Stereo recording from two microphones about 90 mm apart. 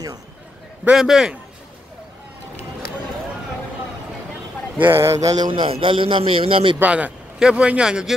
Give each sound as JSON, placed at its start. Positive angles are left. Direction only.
{"t": 0.9, "sound": "a man's voice", "side_deg": -5}
{"t": 4.7, "sound": "speech", "side_deg": -25}
{"t": 5.5, "sound": "a man's voice", "side_deg": -75}
{"t": 6.8, "sound": "a man's voice", "side_deg": -15}